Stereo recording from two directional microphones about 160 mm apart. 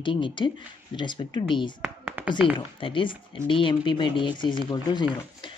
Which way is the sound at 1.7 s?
10° right (ahead or behind).